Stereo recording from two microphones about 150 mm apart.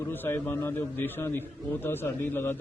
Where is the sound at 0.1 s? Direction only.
15° left (ahead or behind).